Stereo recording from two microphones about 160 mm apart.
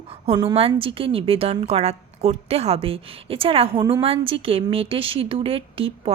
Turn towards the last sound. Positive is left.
turn(degrees=-35)  # may be behind; listen again after turning